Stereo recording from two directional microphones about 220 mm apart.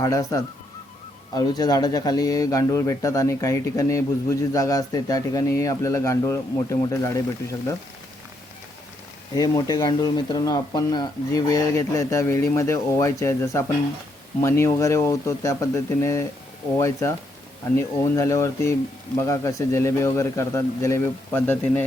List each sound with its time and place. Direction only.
0.0 s speech: 15° left (ahead or behind)
9.3 s speech: 15° left (ahead or behind)